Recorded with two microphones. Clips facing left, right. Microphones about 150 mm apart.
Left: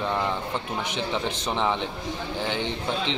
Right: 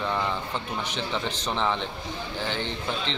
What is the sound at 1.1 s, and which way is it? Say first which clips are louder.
Speech: left 2 dB; 10° left (ahead or behind).